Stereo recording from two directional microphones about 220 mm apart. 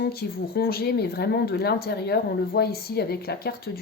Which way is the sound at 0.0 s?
45° left (ahead or behind).